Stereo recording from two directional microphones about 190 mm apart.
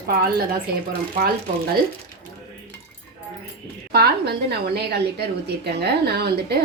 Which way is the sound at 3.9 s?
55° right (ahead or behind).